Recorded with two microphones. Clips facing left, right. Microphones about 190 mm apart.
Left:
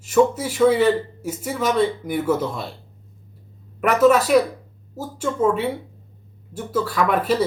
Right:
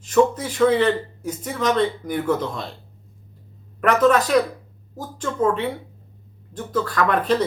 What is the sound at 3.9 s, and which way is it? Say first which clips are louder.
Speech: left 2 dB; 10° left (ahead or behind).